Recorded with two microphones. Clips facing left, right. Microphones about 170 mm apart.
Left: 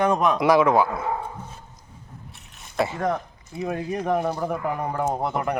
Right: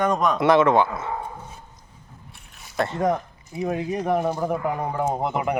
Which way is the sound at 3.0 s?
15° right (ahead or behind).